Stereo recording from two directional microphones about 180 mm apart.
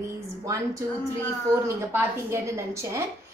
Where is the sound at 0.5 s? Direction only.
15° right (ahead or behind).